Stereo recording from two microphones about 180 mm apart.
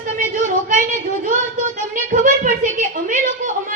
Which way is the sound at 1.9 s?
45° right (ahead or behind).